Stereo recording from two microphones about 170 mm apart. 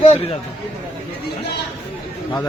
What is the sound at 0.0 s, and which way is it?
Speech, 40° left (ahead or behind).